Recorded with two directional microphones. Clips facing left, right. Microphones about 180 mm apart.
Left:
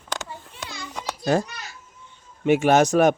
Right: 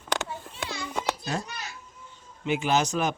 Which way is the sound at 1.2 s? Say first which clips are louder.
Left 11 dB; 90° left.